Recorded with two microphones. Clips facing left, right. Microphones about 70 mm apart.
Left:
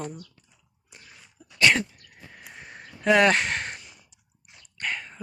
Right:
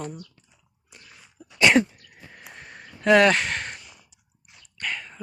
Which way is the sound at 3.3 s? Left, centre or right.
Left.